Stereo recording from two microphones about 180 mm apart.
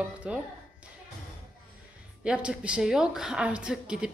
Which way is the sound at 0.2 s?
5° right (ahead or behind).